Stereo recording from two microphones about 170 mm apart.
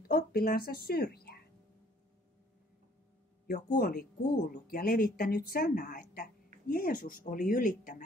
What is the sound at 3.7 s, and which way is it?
A woman's voice, 60° left (ahead or behind).